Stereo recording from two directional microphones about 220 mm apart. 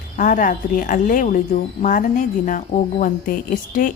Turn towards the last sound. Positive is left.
turn(degrees=40)  # may be behind; listen again after turning